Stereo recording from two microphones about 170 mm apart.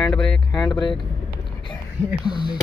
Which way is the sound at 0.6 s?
25° left (ahead or behind).